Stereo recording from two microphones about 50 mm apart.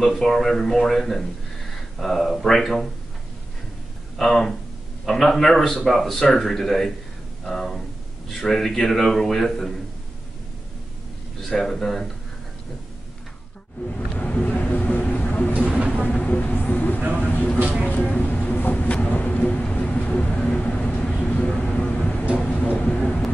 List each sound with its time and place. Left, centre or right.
0.0 s speech: centre
4.2 s a man's voice: centre
11.4 s speech: centre
13.8 s speech: left
17.8 s vehicle: left
19.7 s a sound: left
20.2 s a sound: centre
21.1 s vehicle: left
21.7 s a sound: left
22.4 s vehicle: left